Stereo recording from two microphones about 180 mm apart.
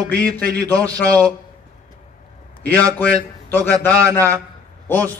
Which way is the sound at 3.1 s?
10° left (ahead or behind).